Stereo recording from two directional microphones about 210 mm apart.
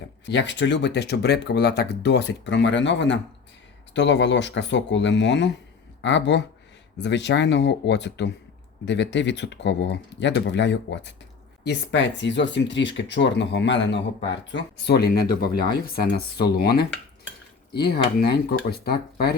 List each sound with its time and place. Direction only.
0.3 s speech: 55° left (ahead or behind)
16.4 s speech: 50° left (ahead or behind)